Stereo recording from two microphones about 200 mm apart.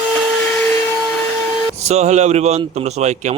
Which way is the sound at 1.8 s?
35° right (ahead or behind).